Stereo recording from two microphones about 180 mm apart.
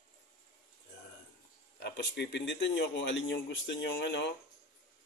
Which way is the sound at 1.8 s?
70° left (ahead or behind).